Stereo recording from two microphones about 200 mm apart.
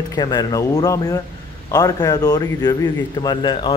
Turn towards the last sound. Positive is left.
turn(degrees=20)  # may be behind; listen again after turning